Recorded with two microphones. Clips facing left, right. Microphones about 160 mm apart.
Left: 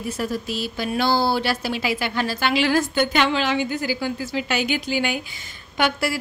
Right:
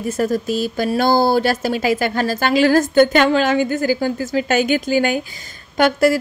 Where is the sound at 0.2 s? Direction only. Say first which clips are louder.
Right 9 dB; 45° right (ahead or behind).